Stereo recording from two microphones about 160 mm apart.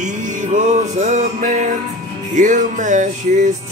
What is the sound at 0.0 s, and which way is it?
Music, 50° right (ahead or behind).